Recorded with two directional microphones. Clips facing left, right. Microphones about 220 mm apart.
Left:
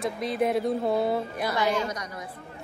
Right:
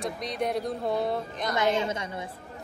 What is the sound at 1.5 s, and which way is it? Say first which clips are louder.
Speech: right 2 dB; 25° right (ahead or behind).